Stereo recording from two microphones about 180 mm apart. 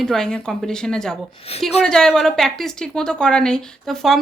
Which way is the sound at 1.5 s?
35° left (ahead or behind).